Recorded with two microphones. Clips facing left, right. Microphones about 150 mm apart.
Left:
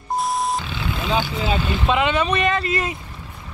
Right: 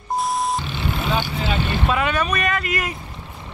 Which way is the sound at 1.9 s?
20° left (ahead or behind).